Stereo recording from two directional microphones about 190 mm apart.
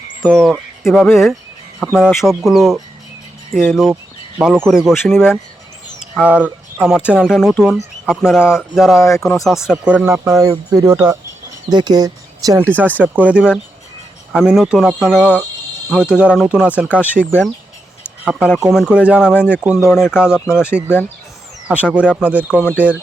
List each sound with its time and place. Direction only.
0.2 s speech: centre (ahead or behind)
6.1 s speech: 10° right (ahead or behind)
9.0 s speech: 15° left (ahead or behind)
9.2 s speech: centre (ahead or behind); by 12.6 s 20° right (ahead or behind)
13.0 s speech: 5° right (ahead or behind)
18.3 s speech: 5° right (ahead or behind)
21.9 s speech: 5° right (ahead or behind)
22.6 s speech: 10° left (ahead or behind)